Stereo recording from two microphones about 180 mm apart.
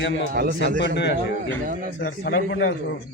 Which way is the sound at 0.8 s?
75° left (ahead or behind).